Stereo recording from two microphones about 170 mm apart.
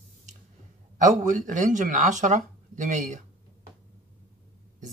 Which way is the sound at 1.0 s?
50° right (ahead or behind).